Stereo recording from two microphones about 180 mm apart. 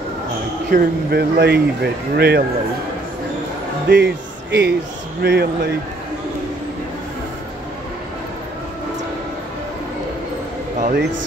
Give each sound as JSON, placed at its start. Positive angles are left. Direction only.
{"t": 0.7, "sound": "speech", "side_deg": -60}
{"t": 3.9, "sound": "speech", "side_deg": -70}
{"t": 10.8, "sound": "a sound", "side_deg": -55}